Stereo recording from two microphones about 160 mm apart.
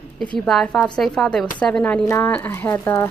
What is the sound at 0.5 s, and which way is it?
Speech, 5° left (ahead or behind).